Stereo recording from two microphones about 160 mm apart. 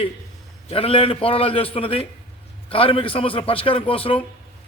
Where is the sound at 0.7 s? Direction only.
35° left (ahead or behind).